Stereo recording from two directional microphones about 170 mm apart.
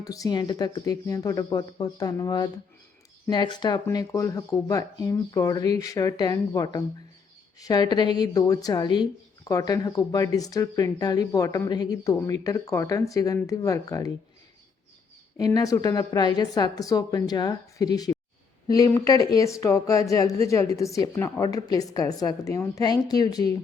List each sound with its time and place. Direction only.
0.0 s a woman's voice: 20° left (ahead or behind)
15.4 s a woman's voice: 20° left (ahead or behind)